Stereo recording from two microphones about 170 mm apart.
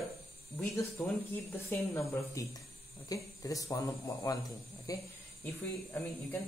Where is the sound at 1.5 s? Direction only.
15° left (ahead or behind).